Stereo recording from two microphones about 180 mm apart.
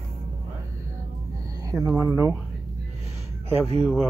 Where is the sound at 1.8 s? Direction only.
15° right (ahead or behind).